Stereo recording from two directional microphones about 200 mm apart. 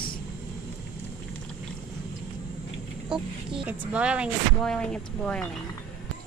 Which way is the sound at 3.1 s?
5° right (ahead or behind).